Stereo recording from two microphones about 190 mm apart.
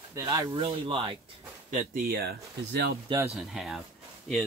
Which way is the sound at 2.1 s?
55° right (ahead or behind).